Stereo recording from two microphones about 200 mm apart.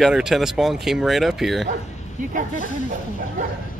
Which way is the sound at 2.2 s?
40° right (ahead or behind).